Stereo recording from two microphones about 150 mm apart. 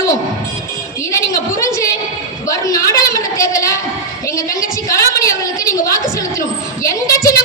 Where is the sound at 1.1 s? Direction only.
20° left (ahead or behind).